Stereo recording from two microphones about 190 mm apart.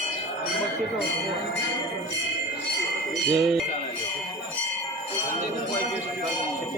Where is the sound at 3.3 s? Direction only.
Centre (ahead or behind).